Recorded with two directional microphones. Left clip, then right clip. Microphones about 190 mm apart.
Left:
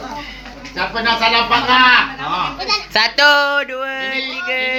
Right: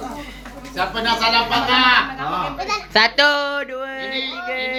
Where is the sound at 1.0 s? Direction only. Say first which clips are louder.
Left 3 dB; 30° left (ahead or behind).